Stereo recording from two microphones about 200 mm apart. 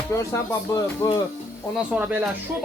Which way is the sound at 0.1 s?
15° left (ahead or behind).